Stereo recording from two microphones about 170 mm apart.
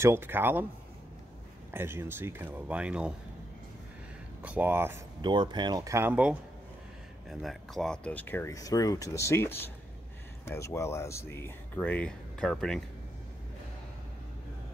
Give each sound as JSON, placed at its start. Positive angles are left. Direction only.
{"t": 0.0, "sound": "speech", "side_deg": -15}
{"t": 1.7, "sound": "speech", "side_deg": -15}
{"t": 4.4, "sound": "speech", "side_deg": -10}
{"t": 5.2, "sound": "speech", "side_deg": -25}
{"t": 7.2, "sound": "speech", "side_deg": 0}